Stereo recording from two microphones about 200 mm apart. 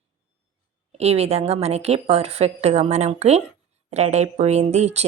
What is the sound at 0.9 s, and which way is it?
A woman's voice, 30° right (ahead or behind).